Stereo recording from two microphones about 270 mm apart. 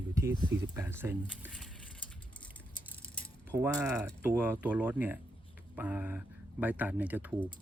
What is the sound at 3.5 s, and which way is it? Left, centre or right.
Speech, centre.